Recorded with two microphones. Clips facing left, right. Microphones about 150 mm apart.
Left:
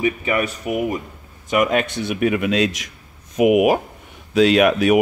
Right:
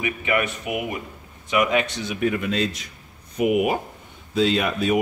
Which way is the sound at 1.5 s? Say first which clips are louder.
Left 3 dB; 50° left (ahead or behind).